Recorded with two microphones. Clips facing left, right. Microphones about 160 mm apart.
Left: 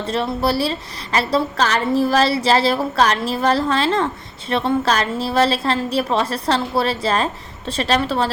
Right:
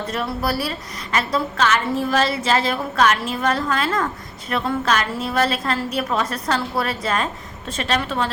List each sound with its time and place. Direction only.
0.1 s a woman's voice: 30° left (ahead or behind)